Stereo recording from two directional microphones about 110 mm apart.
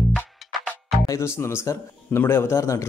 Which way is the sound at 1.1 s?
25° left (ahead or behind).